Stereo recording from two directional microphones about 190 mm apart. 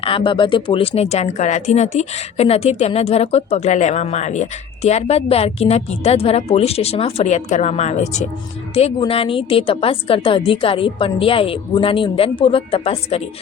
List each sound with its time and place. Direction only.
0.0 s a woman's voice: 25° left (ahead or behind)